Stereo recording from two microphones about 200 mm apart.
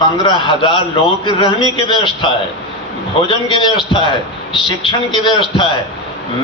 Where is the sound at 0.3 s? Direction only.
25° left (ahead or behind).